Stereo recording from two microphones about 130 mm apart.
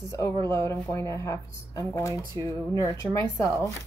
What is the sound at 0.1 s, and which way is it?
Speech, 20° left (ahead or behind).